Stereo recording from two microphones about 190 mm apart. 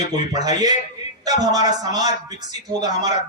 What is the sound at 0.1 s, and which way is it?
A man's voice, 20° right (ahead or behind).